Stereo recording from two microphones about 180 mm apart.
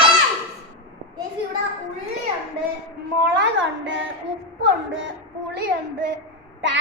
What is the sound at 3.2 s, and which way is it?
A woman's voice, 90° right.